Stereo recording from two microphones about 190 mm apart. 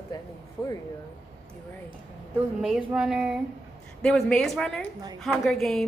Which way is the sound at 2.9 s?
5° right (ahead or behind).